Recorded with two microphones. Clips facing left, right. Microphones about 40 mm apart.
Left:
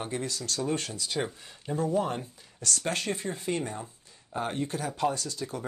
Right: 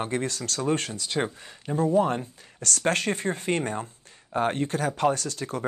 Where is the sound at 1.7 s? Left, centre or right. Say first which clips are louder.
Right 5 dB; right.